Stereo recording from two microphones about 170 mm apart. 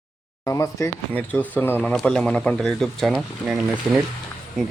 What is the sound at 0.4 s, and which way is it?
Speech, 20° left (ahead or behind).